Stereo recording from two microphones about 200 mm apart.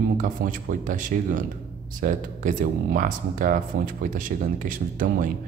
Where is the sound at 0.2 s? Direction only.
40° right (ahead or behind).